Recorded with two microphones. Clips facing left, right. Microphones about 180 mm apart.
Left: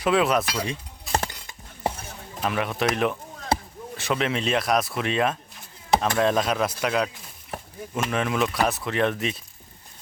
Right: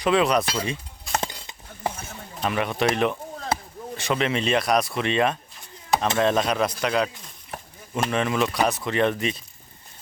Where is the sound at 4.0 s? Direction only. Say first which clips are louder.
Right 1 dB; centre (ahead or behind).